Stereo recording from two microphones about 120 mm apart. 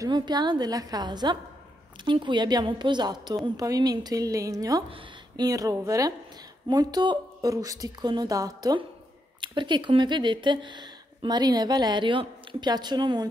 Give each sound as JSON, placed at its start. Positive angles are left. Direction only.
{"t": 0.0, "sound": "speech", "side_deg": -35}